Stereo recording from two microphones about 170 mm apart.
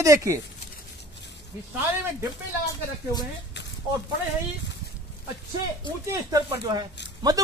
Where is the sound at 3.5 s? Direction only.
90° left.